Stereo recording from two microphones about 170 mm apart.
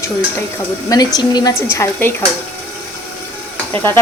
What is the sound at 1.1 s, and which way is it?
Speech, 20° left (ahead or behind).